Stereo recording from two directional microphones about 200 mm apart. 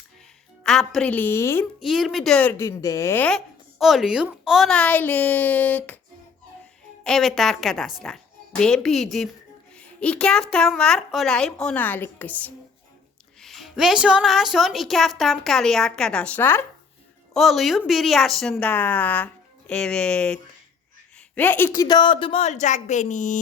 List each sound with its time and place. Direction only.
0.6 s a woman's voice: centre (ahead or behind)
1.8 s a woman's voice: centre (ahead or behind)
7.0 s a woman's voice: centre (ahead or behind); by 23.4 s 40° left (ahead or behind)